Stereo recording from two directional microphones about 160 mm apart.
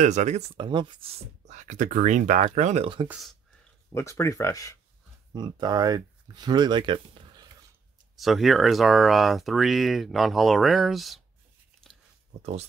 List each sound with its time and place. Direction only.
0.0 s speech: 50° right (ahead or behind)
0.6 s speech: 30° right (ahead or behind); by 2.9 s 45° right (ahead or behind)
3.9 s speech: 20° left (ahead or behind)
5.3 s speech: 25° right (ahead or behind)
8.2 s speech: centre (ahead or behind)
12.4 s speech: 40° right (ahead or behind)